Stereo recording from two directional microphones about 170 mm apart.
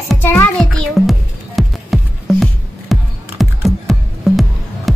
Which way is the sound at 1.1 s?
Centre (ahead or behind).